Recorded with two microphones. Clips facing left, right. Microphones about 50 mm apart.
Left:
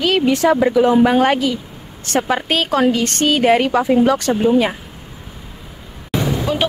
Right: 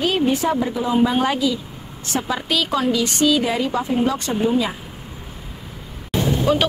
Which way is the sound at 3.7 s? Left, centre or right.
Left.